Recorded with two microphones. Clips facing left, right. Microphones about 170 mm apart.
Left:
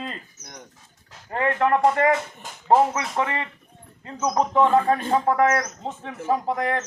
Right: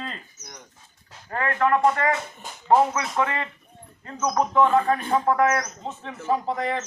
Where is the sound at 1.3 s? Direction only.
20° left (ahead or behind).